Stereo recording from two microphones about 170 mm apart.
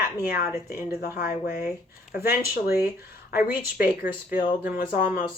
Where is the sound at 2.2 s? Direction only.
65° left (ahead or behind).